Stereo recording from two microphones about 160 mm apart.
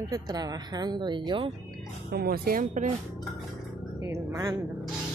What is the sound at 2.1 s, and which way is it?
Speech, 75° right (ahead or behind).